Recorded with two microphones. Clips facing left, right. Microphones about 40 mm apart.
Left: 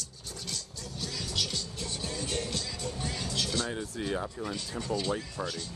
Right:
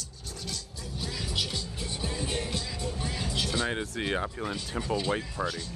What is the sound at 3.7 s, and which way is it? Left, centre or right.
Speech, right.